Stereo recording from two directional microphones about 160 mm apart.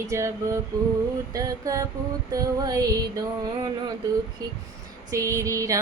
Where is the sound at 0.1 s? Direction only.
20° right (ahead or behind).